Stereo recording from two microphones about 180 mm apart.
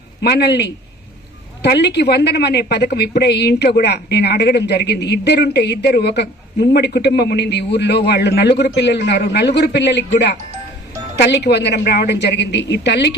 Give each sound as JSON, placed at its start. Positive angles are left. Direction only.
{"t": 0.2, "sound": "a woman's voice", "side_deg": 65}